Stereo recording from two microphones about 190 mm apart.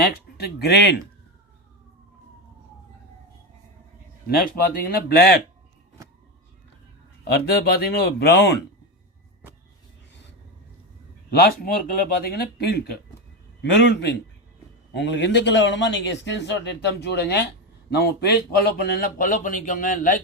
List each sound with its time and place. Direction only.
0.3 s speech: 60° left (ahead or behind)
4.3 s a man's voice: 50° left (ahead or behind)
7.3 s speech: 60° left (ahead or behind)
11.3 s a man's voice: 55° left (ahead or behind)